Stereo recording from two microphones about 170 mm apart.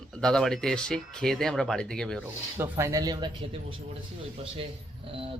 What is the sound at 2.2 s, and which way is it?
Speech, 15° right (ahead or behind).